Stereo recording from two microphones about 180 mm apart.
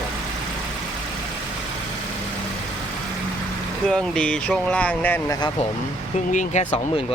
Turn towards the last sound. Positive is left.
turn(degrees=40)  # may be behind; listen again after turning